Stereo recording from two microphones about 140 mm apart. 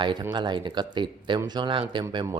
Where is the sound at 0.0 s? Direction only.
35° right (ahead or behind).